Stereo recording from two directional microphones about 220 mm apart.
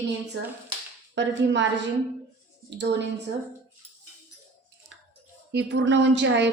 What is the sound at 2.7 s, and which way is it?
Speech, 50° right (ahead or behind).